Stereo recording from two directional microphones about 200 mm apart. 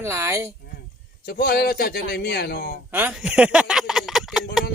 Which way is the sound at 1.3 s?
50° left (ahead or behind).